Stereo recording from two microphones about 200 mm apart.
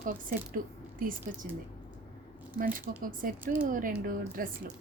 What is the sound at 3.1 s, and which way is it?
Speech, 45° right (ahead or behind).